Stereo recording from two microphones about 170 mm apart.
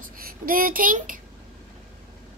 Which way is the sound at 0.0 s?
55° right (ahead or behind).